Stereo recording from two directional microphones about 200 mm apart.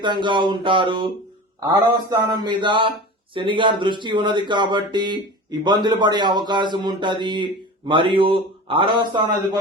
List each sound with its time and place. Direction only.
0.0 s speech: 25° right (ahead or behind)